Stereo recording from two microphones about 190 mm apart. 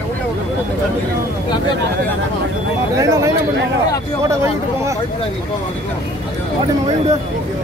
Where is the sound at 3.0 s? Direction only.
15° right (ahead or behind).